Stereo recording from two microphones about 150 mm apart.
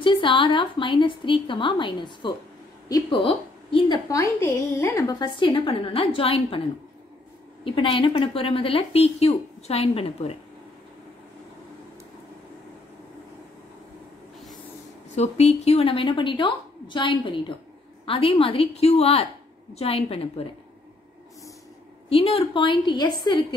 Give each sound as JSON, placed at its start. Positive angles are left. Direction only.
{"t": 0.0, "sound": "a woman's voice", "side_deg": 35}
{"t": 4.1, "sound": "a woman's voice", "side_deg": 20}
{"t": 7.6, "sound": "a woman's voice", "side_deg": 35}
{"t": 15.1, "sound": "a woman's voice", "side_deg": 45}
{"t": 22.1, "sound": "a woman's voice", "side_deg": 40}